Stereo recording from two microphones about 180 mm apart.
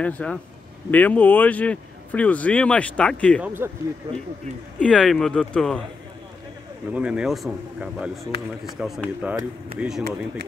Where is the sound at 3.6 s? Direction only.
10° right (ahead or behind).